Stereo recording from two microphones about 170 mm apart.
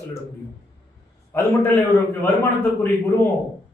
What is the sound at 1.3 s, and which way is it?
Speech, 15° left (ahead or behind).